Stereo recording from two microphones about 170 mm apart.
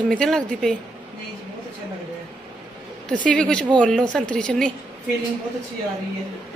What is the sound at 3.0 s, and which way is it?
A woman's voice, 5° left (ahead or behind).